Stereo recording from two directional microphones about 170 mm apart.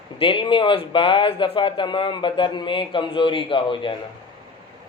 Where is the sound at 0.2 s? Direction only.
30° left (ahead or behind).